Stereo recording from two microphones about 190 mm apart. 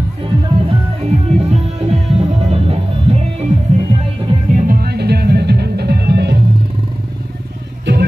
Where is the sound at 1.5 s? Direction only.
30° right (ahead or behind); by 6.4 s 60° right (ahead or behind).